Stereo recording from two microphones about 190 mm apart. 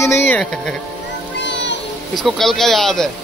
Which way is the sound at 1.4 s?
70° left (ahead or behind).